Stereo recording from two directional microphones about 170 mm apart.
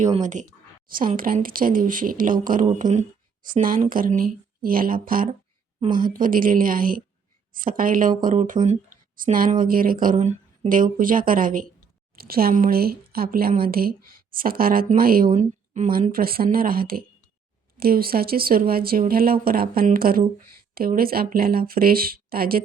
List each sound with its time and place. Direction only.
0.0 s speech: 45° right (ahead or behind)
15.4 s speech: 45° right (ahead or behind)